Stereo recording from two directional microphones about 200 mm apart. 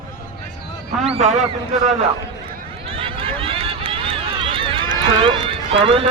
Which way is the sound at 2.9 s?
25° right (ahead or behind).